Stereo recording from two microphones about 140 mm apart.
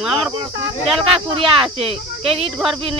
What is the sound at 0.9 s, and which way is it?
Speech, 40° right (ahead or behind).